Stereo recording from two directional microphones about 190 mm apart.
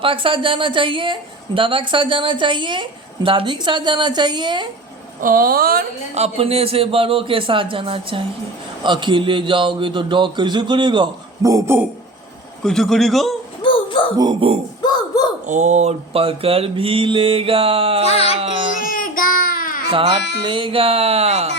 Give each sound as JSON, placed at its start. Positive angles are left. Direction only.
{"t": 0.0, "sound": "a man's voice", "side_deg": -25}
{"t": 5.2, "sound": "speech", "side_deg": -50}
{"t": 6.1, "sound": "a man's voice", "side_deg": -35}
{"t": 12.6, "sound": "a man's voice", "side_deg": 0}
{"t": 13.6, "sound": "a sound", "side_deg": 25}
{"t": 14.2, "sound": "a man's voice", "side_deg": -25}
{"t": 14.8, "sound": "speech", "side_deg": 20}
{"t": 15.4, "sound": "a man's voice", "side_deg": -40}
{"t": 18.1, "sound": "a child's voice", "side_deg": 30}
{"t": 18.3, "sound": "a man's voice", "side_deg": -30}
{"t": 18.8, "sound": "child singing", "side_deg": 45}
{"t": 19.9, "sound": "a man's voice", "side_deg": -30}